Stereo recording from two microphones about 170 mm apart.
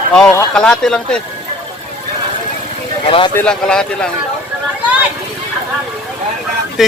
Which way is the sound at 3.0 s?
35° left (ahead or behind).